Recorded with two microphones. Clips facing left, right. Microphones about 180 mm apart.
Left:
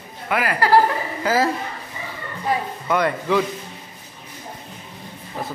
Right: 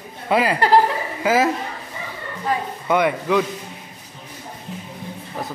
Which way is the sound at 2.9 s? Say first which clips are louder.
Right 2 dB; 10° right (ahead or behind).